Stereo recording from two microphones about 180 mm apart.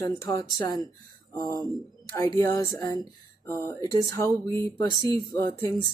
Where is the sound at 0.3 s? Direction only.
20° left (ahead or behind).